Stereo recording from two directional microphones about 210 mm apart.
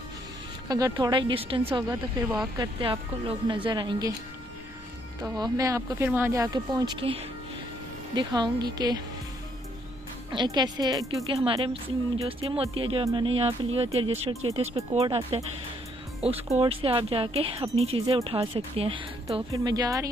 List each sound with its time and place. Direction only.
0.7 s speech: 15° right (ahead or behind)
5.4 s speech: 15° right (ahead or behind)
10.3 s speech: 20° right (ahead or behind)
16.4 s speech: 30° right (ahead or behind)